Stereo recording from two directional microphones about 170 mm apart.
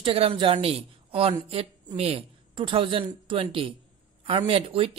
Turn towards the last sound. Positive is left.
turn(degrees=-35)  # may be behind; listen again after turning